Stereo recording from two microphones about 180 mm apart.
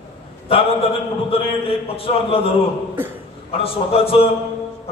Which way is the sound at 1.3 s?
30° left (ahead or behind).